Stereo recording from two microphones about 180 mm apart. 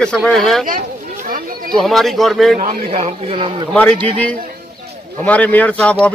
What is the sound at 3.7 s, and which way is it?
A man's voice, 5° left (ahead or behind).